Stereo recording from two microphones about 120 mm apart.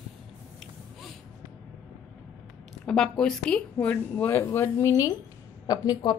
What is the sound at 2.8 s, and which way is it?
A woman's voice, 5° left (ahead or behind).